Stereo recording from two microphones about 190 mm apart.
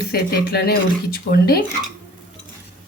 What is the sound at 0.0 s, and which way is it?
Speech, 55° left (ahead or behind).